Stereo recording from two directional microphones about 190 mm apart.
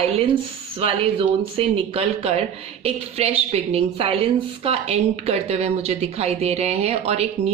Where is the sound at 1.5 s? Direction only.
30° right (ahead or behind).